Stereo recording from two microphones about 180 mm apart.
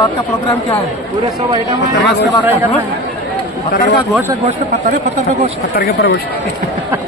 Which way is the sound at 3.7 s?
60° left (ahead or behind).